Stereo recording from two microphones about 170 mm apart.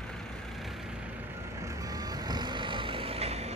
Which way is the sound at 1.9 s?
20° right (ahead or behind).